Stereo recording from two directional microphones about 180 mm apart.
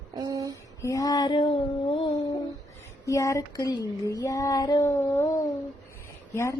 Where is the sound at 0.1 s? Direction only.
20° right (ahead or behind).